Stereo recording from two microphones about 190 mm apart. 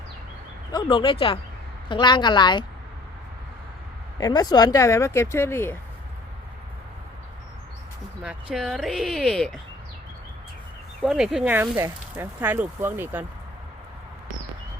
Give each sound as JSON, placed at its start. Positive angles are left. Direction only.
{"t": 0.7, "sound": "speech", "side_deg": 25}
{"t": 4.2, "sound": "speech", "side_deg": 20}
{"t": 8.2, "sound": "speech", "side_deg": -5}
{"t": 11.0, "sound": "speech", "side_deg": 0}